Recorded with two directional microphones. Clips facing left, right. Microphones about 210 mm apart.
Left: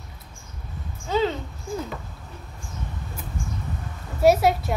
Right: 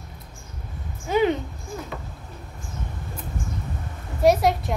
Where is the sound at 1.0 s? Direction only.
15° right (ahead or behind).